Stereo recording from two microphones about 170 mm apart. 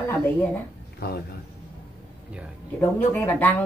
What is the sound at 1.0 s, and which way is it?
Speech, 65° left (ahead or behind).